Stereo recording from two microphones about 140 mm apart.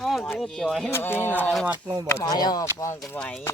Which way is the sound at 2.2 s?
30° left (ahead or behind).